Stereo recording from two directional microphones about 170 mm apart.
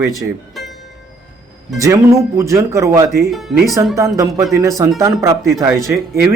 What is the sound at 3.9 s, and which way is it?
Speech, 20° right (ahead or behind).